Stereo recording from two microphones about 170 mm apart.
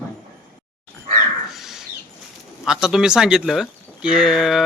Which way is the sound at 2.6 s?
5° right (ahead or behind).